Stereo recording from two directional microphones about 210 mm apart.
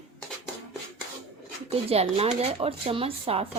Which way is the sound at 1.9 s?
30° right (ahead or behind).